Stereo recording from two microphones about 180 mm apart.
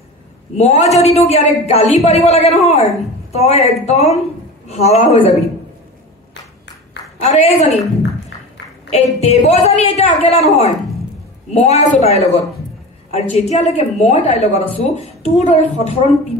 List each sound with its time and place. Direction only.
0.6 s a woman's voice: 35° left (ahead or behind)
7.2 s a woman's voice: 40° left (ahead or behind)
8.9 s a woman's voice: 35° left (ahead or behind)